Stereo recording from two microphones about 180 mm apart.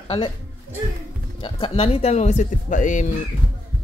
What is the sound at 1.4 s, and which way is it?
Speech, 30° left (ahead or behind).